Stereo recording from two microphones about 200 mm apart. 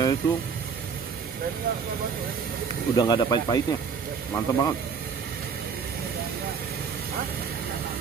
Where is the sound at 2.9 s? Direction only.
20° left (ahead or behind).